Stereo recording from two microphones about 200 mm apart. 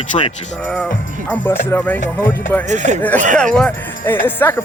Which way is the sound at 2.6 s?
35° right (ahead or behind).